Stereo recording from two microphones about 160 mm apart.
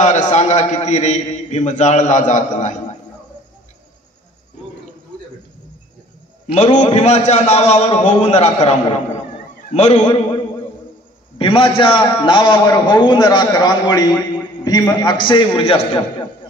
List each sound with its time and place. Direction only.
0.0 s a man's voice: 45° left (ahead or behind)
6.5 s a man's voice: 45° left (ahead or behind)
11.3 s a man's voice: 35° left (ahead or behind)